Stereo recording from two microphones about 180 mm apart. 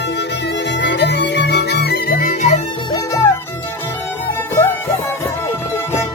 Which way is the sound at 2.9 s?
20° left (ahead or behind).